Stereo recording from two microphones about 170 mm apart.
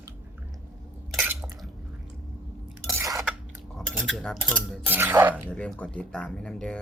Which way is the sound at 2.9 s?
15° right (ahead or behind).